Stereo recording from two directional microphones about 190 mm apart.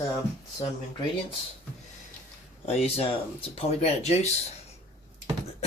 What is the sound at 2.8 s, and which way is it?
Speech, 30° left (ahead or behind).